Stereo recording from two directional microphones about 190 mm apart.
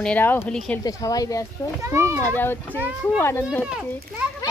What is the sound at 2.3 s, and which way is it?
Speech, 10° left (ahead or behind).